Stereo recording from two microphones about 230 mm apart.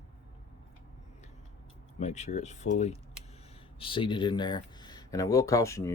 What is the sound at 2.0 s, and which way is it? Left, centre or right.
Speech, left.